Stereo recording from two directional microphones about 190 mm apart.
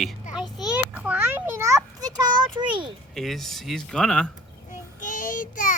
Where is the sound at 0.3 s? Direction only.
5° right (ahead or behind); by 2.9 s 25° right (ahead or behind).